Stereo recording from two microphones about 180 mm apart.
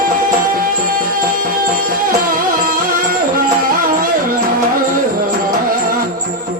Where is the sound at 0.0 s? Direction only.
50° right (ahead or behind).